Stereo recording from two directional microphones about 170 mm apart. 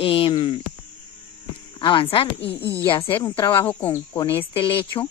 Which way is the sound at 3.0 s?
15° left (ahead or behind).